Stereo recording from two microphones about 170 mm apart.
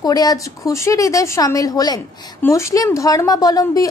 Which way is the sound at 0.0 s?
20° left (ahead or behind).